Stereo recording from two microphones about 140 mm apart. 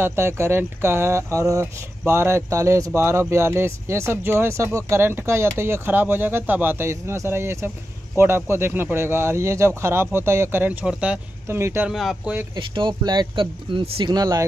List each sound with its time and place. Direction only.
0.0 s speech: 20° right (ahead or behind)
11.4 s speech: 20° right (ahead or behind)
11.9 s speech: centre (ahead or behind)
12.5 s speech: 35° right (ahead or behind)